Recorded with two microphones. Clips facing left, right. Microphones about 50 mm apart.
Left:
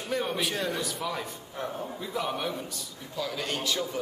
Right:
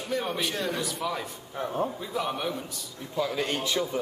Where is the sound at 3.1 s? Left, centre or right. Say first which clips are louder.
Right 4 dB; right.